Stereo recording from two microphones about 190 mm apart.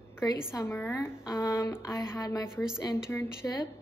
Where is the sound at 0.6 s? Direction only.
10° left (ahead or behind).